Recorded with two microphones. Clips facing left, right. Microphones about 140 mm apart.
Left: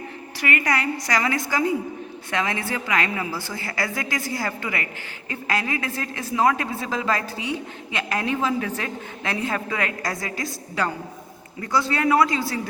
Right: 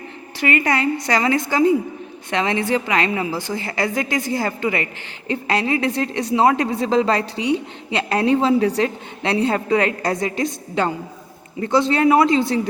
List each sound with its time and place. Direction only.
0.3 s a woman's voice: 25° right (ahead or behind)